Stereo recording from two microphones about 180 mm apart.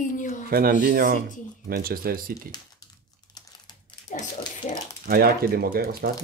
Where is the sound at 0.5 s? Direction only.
55° right (ahead or behind).